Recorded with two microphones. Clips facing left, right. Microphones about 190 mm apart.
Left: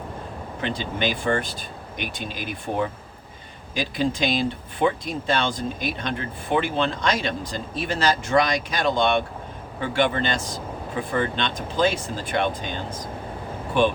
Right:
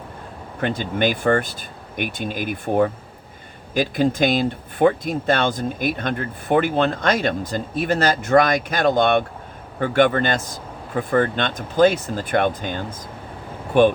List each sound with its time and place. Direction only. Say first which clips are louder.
0.6 s speech: right 5 dB; 50° right (ahead or behind)